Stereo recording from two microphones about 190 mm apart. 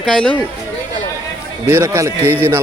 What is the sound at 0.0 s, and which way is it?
Speech, 5° left (ahead or behind).